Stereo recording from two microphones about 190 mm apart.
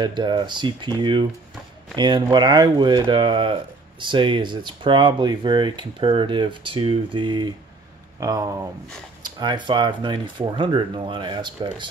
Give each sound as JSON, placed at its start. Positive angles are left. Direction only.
{"t": 0.0, "sound": "speech", "side_deg": -25}